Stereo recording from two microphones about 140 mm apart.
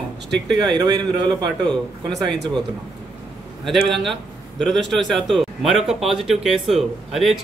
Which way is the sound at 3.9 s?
Centre (ahead or behind).